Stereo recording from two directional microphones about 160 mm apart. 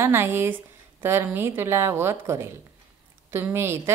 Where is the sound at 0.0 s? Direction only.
15° right (ahead or behind).